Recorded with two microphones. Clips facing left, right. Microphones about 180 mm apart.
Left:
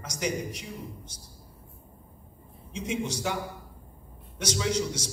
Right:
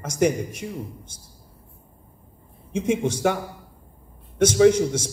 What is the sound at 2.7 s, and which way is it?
A man's voice, 50° right (ahead or behind).